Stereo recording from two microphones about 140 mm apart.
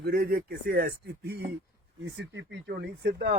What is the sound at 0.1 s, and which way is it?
Speech, 90° right.